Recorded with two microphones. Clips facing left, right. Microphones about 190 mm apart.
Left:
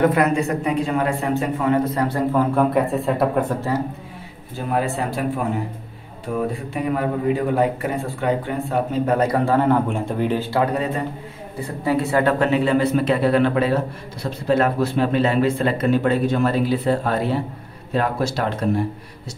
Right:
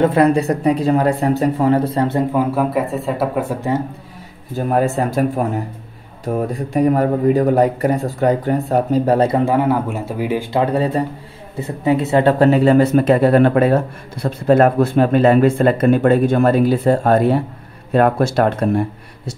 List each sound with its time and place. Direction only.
0.0 s a man's voice: 30° right (ahead or behind)
2.3 s speech: 5° right (ahead or behind)
4.6 s a man's voice: 45° right (ahead or behind)
9.4 s speech: 15° right (ahead or behind)
10.5 s a man's voice: 30° right (ahead or behind)
11.6 s speech: 20° right (ahead or behind); by 18.9 s 55° right (ahead or behind)